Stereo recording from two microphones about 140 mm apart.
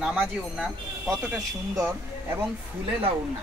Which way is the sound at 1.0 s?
20° right (ahead or behind).